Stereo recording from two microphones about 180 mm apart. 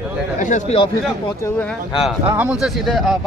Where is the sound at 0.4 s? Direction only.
45° left (ahead or behind).